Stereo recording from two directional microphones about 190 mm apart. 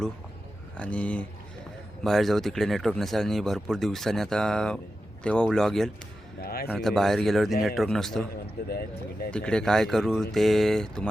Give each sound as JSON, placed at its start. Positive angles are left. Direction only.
{"t": 0.8, "sound": "speech", "side_deg": 5}
{"t": 6.4, "sound": "a man's voice", "side_deg": 55}
{"t": 6.7, "sound": "speech", "side_deg": 0}
{"t": 8.7, "sound": "speech", "side_deg": 55}
{"t": 9.3, "sound": "speech", "side_deg": 5}